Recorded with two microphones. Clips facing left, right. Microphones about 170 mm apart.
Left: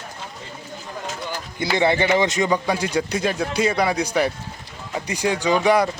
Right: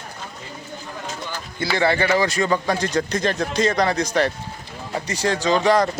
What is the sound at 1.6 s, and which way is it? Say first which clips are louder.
Speech: left 1 dB; 20° left (ahead or behind).